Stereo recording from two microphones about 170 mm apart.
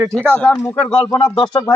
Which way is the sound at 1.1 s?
25° left (ahead or behind).